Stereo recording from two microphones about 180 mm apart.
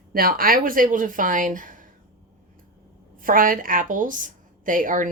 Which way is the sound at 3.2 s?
50° right (ahead or behind).